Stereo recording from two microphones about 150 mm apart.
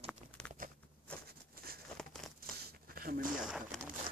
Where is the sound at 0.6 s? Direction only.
65° right (ahead or behind).